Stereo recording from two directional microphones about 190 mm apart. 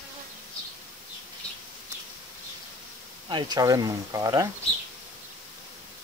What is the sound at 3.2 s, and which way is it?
Speech, 20° right (ahead or behind).